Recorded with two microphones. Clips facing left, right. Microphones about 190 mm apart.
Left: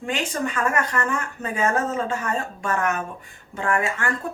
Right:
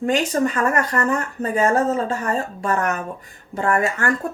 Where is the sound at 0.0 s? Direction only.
40° right (ahead or behind).